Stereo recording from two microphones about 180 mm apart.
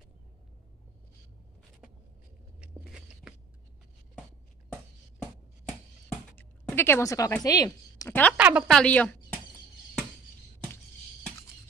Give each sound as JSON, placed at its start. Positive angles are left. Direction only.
{"t": 2.6, "sound": "biting", "side_deg": -5}
{"t": 6.3, "sound": "a sound", "side_deg": 10}
{"t": 7.4, "sound": "a woman's voice", "side_deg": 20}
{"t": 8.1, "sound": "a woman's voice", "side_deg": 10}
{"t": 8.4, "sound": "speech", "side_deg": -10}
{"t": 8.6, "sound": "a woman's voice", "side_deg": 5}